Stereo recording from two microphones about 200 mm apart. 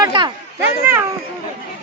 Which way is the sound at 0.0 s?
20° right (ahead or behind).